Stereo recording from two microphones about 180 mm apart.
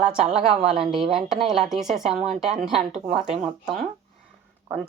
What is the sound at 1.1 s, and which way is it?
A woman's voice, centre (ahead or behind).